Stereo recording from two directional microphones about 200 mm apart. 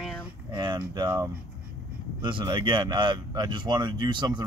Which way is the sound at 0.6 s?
25° right (ahead or behind).